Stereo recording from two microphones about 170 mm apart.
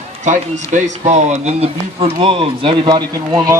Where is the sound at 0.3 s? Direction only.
45° right (ahead or behind).